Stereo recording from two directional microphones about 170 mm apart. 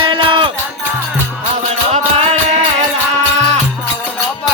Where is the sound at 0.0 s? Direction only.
30° right (ahead or behind).